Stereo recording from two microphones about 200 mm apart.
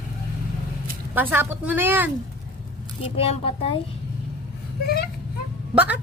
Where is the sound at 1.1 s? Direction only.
10° right (ahead or behind).